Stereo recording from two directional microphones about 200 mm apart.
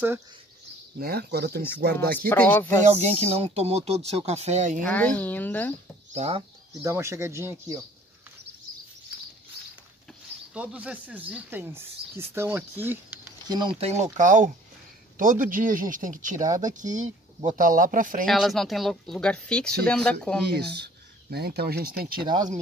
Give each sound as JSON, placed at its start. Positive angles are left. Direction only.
{"t": 0.9, "sound": "speech", "side_deg": -50}
{"t": 2.1, "sound": "a woman's voice", "side_deg": 10}
{"t": 3.3, "sound": "speech", "side_deg": -30}
{"t": 4.8, "sound": "a woman's voice", "side_deg": 5}
{"t": 6.1, "sound": "speech", "side_deg": -30}
{"t": 6.8, "sound": "speech", "side_deg": -15}
{"t": 10.5, "sound": "speech", "side_deg": -5}
{"t": 14.1, "sound": "speech", "side_deg": -40}
{"t": 18.2, "sound": "speech", "side_deg": 0}
{"t": 20.6, "sound": "speech", "side_deg": -55}
{"t": 22.2, "sound": "speech", "side_deg": -20}